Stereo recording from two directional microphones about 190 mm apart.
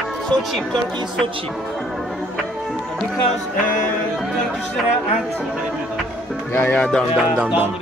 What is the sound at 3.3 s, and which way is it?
Speech, 5° left (ahead or behind).